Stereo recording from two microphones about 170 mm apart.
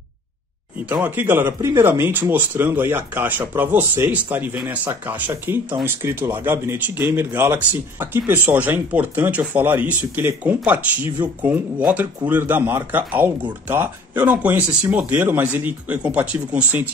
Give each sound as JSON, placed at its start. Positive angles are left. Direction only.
{"t": 0.8, "sound": "speech", "side_deg": -10}